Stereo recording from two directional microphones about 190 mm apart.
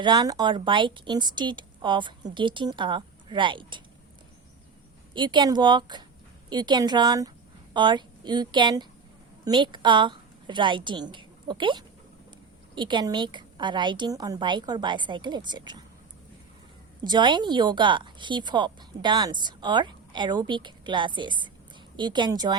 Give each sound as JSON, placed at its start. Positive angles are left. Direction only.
{"t": 0.0, "sound": "speech", "side_deg": -20}
{"t": 5.1, "sound": "a woman's voice", "side_deg": -25}
{"t": 17.0, "sound": "speech", "side_deg": -25}